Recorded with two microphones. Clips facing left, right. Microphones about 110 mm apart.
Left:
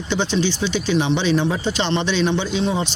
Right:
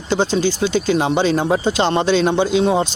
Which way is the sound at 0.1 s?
45° right (ahead or behind).